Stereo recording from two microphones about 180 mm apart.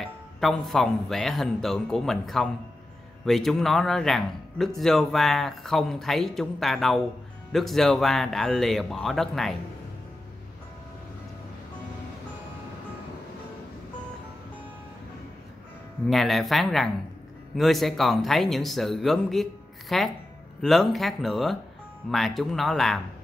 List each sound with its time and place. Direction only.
0.0 s a man's voice: centre (ahead or behind)
16.1 s a man's voice: centre (ahead or behind)